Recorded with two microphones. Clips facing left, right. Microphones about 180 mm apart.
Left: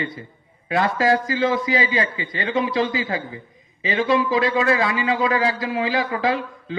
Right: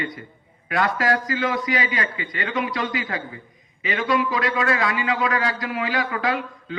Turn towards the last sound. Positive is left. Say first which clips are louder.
# left 3 dB
turn(degrees=25)  # may be behind; listen again after turning